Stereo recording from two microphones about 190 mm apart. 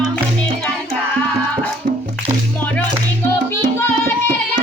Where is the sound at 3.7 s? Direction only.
10° left (ahead or behind).